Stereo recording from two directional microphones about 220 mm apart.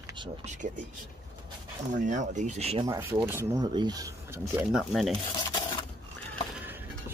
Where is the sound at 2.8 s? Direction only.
20° right (ahead or behind); by 5.1 s centre (ahead or behind).